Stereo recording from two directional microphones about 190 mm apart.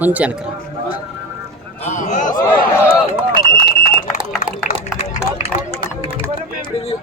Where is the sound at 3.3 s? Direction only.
45° left (ahead or behind).